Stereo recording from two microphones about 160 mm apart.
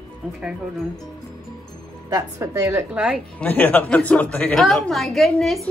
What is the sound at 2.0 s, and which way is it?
Speech, 20° right (ahead or behind).